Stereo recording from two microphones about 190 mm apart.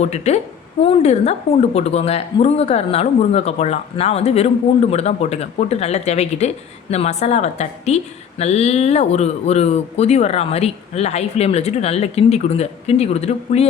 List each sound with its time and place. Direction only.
0.0 s a woman's voice: 35° left (ahead or behind)